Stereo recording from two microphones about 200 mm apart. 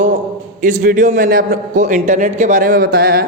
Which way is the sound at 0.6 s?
40° right (ahead or behind).